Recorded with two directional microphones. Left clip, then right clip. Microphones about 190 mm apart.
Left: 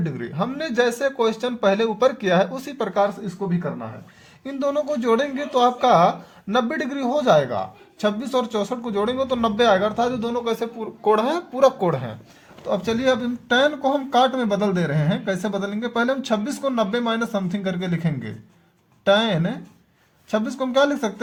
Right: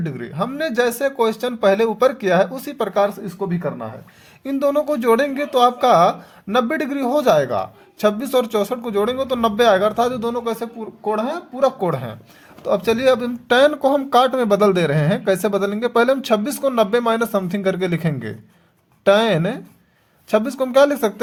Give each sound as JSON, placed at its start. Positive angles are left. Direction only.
{"t": 0.0, "sound": "speech", "side_deg": -20}
{"t": 10.8, "sound": "speech", "side_deg": 10}
{"t": 11.8, "sound": "speech", "side_deg": -15}
{"t": 12.6, "sound": "speech", "side_deg": -35}